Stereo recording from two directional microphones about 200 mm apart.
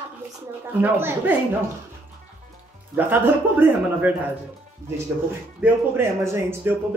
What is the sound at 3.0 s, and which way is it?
Speech, 10° right (ahead or behind).